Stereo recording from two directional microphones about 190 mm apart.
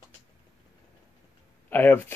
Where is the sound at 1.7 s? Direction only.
10° left (ahead or behind).